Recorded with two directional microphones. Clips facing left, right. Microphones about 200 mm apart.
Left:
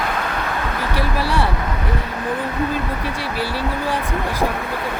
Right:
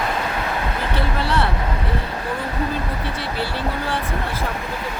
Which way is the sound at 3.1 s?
10° left (ahead or behind).